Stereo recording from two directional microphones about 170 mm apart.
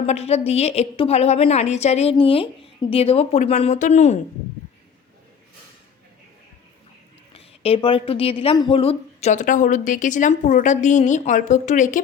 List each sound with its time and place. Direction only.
0.0 s a woman's voice: 40° left (ahead or behind)
7.3 s a woman's voice: 35° left (ahead or behind)